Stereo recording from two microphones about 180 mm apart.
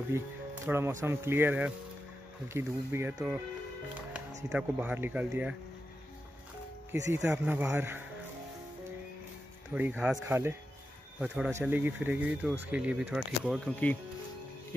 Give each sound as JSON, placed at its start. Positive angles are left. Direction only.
{"t": 0.1, "sound": "speech", "side_deg": -15}
{"t": 4.5, "sound": "speech", "side_deg": -5}
{"t": 6.9, "sound": "speech", "side_deg": -15}
{"t": 9.8, "sound": "speech", "side_deg": -10}
{"t": 13.7, "sound": "speech", "side_deg": 10}